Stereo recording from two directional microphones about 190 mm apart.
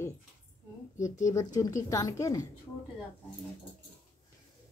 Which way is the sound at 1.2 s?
20° left (ahead or behind).